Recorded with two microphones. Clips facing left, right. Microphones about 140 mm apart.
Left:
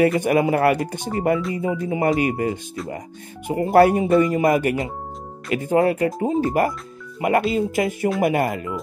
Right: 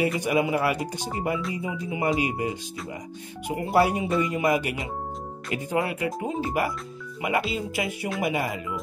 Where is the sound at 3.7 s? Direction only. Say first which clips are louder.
Left 8 dB; 55° left (ahead or behind).